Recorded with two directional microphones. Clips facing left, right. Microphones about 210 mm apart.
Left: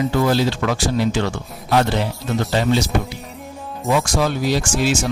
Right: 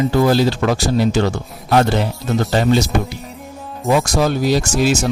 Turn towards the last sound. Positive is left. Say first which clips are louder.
# right 3 dB
turn(degrees=-40)  # may be behind; listen again after turning